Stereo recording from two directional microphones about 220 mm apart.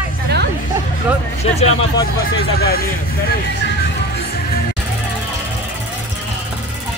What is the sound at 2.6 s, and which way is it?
Speech, 45° left (ahead or behind).